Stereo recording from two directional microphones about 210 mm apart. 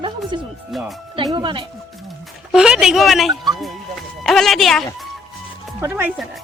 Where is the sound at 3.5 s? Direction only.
Centre (ahead or behind).